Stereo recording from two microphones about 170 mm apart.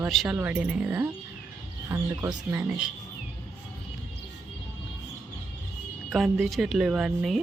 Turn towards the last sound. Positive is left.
turn(degrees=-5)  # may be behind; listen again after turning